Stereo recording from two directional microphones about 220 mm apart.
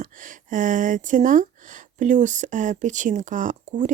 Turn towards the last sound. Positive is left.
turn(degrees=-35)  # may be behind; listen again after turning